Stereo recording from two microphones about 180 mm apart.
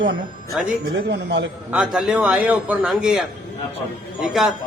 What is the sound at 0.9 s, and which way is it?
Speech, 85° right.